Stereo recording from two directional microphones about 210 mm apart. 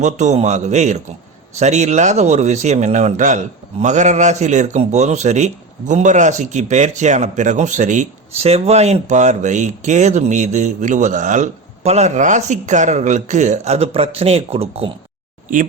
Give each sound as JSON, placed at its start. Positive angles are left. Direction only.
{"t": 0.0, "sound": "speech", "side_deg": -35}